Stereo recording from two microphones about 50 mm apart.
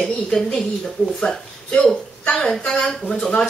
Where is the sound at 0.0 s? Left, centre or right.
Centre.